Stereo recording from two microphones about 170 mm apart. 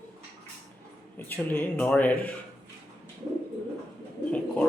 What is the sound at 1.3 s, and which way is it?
A man's voice, 10° left (ahead or behind).